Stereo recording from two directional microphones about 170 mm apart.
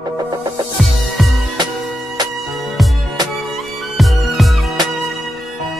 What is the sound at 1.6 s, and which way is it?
Music, 25° right (ahead or behind).